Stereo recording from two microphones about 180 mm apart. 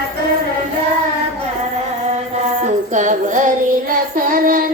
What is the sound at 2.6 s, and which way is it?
Child singing, 45° right (ahead or behind).